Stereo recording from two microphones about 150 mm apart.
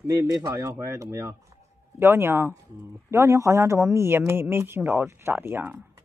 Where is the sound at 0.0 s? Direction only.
20° right (ahead or behind).